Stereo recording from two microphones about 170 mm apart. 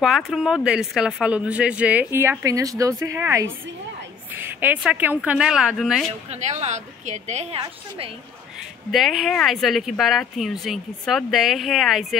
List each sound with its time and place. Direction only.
0.0 s a man's voice: centre (ahead or behind)
6.3 s a woman's voice: 40° right (ahead or behind)
8.9 s speech: centre (ahead or behind)